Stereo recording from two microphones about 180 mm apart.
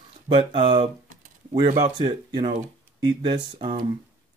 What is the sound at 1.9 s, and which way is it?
Speech, 25° right (ahead or behind).